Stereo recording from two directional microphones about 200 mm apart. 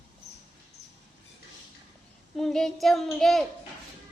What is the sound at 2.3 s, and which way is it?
A child's voice, centre (ahead or behind).